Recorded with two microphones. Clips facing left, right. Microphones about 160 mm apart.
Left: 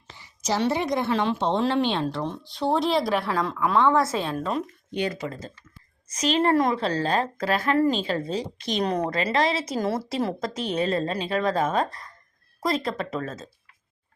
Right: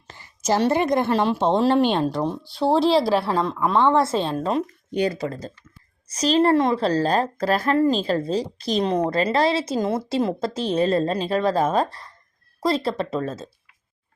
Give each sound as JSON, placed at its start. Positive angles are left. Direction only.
{"t": 0.1, "sound": "a woman's voice", "side_deg": -50}